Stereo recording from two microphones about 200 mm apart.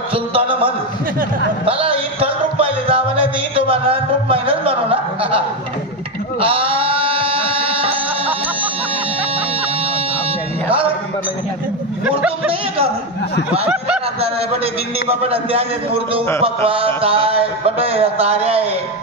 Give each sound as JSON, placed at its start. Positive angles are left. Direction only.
{"t": 0.1, "sound": "a man's voice", "side_deg": -30}
{"t": 1.7, "sound": "music", "side_deg": -30}
{"t": 6.4, "sound": "music", "side_deg": -25}
{"t": 12.0, "sound": "speech", "side_deg": -5}
{"t": 15.0, "sound": "a man's voice", "side_deg": -30}